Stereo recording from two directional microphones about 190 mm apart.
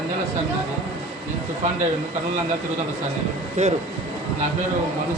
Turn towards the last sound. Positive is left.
turn(degrees=-35)  # may be behind; listen again after turning